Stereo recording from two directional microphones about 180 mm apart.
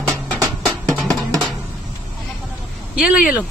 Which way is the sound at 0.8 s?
5° left (ahead or behind).